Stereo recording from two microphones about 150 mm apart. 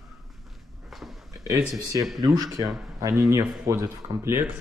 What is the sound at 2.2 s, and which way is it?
Speech, 25° right (ahead or behind).